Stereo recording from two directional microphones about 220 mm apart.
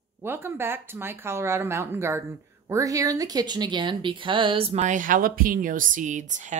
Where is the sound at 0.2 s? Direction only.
10° right (ahead or behind).